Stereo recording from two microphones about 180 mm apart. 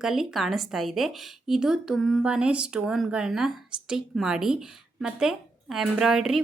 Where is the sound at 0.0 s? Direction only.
Centre (ahead or behind).